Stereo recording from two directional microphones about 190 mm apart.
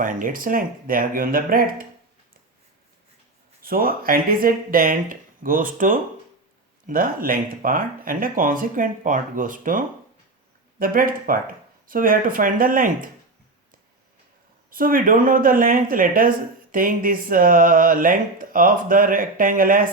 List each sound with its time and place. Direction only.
0.0 s speech: 45° right (ahead or behind)
3.6 s speech: 50° right (ahead or behind)
14.7 s speech: 50° right (ahead or behind)